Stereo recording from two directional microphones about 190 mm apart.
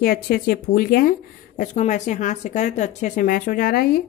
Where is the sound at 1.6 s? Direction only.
40° left (ahead or behind).